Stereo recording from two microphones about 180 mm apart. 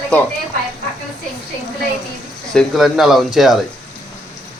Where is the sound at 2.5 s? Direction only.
Centre (ahead or behind).